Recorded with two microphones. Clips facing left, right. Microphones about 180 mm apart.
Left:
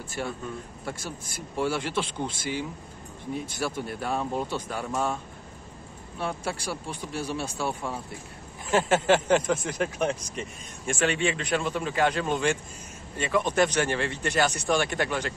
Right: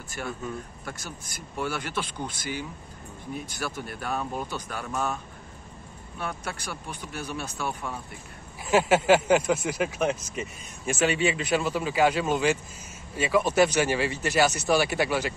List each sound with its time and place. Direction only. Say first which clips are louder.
0.2 s speech: even; 25° left (ahead or behind)
8.6 s speech: right 2 dB; 10° right (ahead or behind)